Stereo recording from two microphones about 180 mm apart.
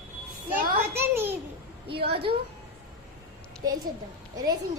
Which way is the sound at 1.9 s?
65° right (ahead or behind).